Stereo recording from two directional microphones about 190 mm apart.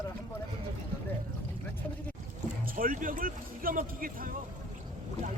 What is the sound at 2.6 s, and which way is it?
Speech, 50° right (ahead or behind).